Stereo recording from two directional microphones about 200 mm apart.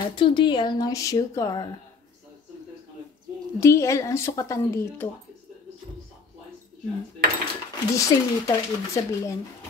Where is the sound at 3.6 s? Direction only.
15° left (ahead or behind).